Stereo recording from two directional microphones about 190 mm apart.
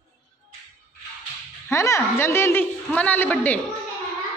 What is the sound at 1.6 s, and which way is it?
A woman's voice, 15° left (ahead or behind).